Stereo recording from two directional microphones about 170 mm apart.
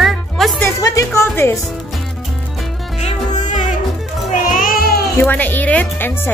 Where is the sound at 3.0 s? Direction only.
45° left (ahead or behind).